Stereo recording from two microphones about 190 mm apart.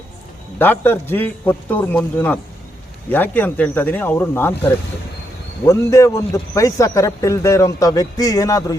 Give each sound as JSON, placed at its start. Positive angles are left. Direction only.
{"t": 0.6, "sound": "a man's voice", "side_deg": 10}
{"t": 5.6, "sound": "a man's voice", "side_deg": 15}